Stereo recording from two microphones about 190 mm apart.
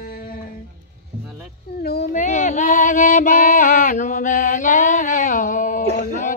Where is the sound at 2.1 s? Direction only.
40° left (ahead or behind).